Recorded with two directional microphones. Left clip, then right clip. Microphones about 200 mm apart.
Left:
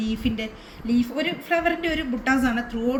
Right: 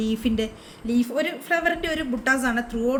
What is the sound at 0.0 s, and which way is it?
A woman's voice, 35° right (ahead or behind).